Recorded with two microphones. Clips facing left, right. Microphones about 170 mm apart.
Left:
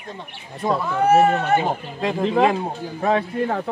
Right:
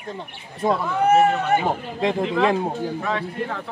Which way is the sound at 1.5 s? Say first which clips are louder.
Left 1 dB; 15° right (ahead or behind).